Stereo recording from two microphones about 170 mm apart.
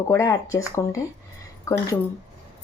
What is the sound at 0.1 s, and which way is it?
A woman's voice, 20° left (ahead or behind).